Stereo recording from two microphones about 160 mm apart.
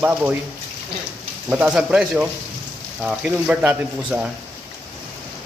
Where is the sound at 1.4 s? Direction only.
10° right (ahead or behind).